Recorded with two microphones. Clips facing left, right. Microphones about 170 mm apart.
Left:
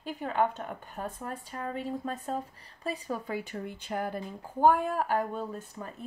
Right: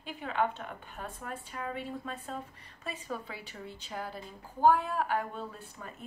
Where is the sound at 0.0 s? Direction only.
45° left (ahead or behind).